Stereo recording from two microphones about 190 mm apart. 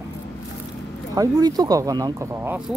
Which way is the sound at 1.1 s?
20° right (ahead or behind).